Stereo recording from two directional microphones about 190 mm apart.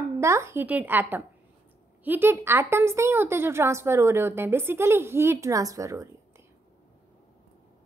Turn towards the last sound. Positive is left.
turn(degrees=-15)  # may be behind; listen again after turning